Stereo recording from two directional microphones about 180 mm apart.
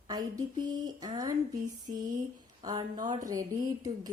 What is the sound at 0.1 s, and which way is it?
Speech, 20° right (ahead or behind).